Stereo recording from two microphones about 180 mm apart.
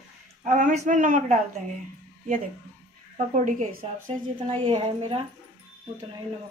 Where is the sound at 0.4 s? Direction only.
45° right (ahead or behind).